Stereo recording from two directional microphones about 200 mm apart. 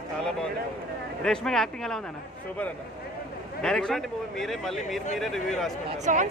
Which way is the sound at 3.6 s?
5° left (ahead or behind).